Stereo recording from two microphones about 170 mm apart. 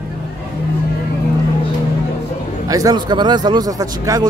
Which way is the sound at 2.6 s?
20° right (ahead or behind).